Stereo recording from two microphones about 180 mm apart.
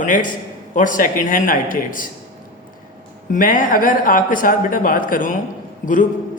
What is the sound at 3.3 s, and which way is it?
Speech, 50° left (ahead or behind).